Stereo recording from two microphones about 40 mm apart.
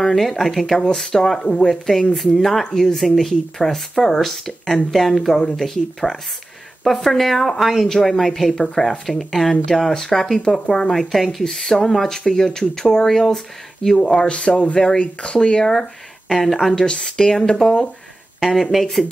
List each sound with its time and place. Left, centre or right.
0.0 s speech: centre
7.9 s speech: centre
10.4 s speech: centre
11.0 s speech: centre
11.4 s speech: centre
14.2 s speech: left
16.3 s speech: centre
16.7 s speech: left
18.4 s speech: centre